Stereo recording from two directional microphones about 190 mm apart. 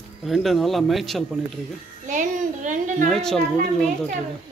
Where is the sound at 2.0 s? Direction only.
40° right (ahead or behind).